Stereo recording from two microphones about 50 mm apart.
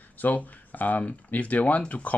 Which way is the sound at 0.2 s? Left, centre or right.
Left.